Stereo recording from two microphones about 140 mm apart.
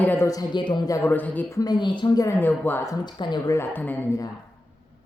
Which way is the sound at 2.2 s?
15° left (ahead or behind).